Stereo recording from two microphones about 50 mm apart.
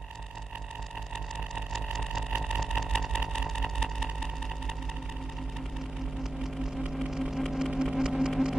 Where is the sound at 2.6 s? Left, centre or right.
Centre.